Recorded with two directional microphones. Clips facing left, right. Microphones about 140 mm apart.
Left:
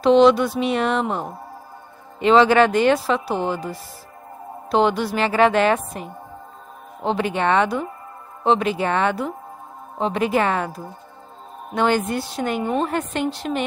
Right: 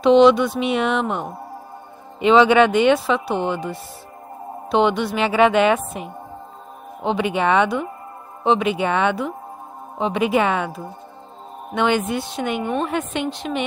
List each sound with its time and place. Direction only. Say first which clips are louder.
0.0 s a woman's voice: right 1 dB; centre (ahead or behind)
7.3 s a woman's voice: right 2 dB; 5° right (ahead or behind)
12.5 s a woman's voice: left 1 dB; 30° left (ahead or behind)
12.8 s a woman's voice: even; centre (ahead or behind)